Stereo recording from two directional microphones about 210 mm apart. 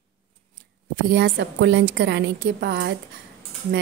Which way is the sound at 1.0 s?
50° right (ahead or behind).